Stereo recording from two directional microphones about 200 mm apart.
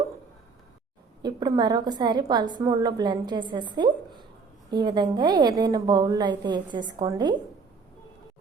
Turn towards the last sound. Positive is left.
turn(degrees=-20)  # may be behind; listen again after turning